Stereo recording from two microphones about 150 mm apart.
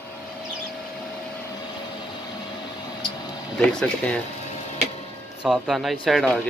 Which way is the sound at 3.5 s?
5° left (ahead or behind).